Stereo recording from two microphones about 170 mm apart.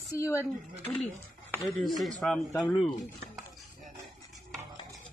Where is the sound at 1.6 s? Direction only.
Centre (ahead or behind).